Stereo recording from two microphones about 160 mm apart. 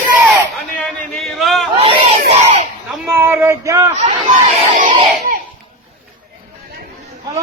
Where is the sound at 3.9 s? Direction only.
45° right (ahead or behind).